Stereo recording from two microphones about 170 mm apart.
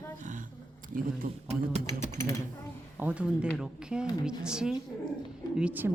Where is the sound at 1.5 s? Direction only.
40° right (ahead or behind).